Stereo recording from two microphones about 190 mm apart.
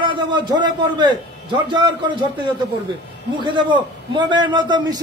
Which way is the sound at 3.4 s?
25° right (ahead or behind).